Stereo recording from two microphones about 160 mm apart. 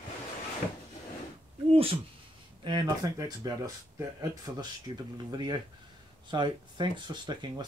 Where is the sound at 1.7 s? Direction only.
35° right (ahead or behind).